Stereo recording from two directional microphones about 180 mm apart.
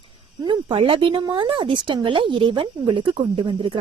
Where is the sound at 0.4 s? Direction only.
30° right (ahead or behind).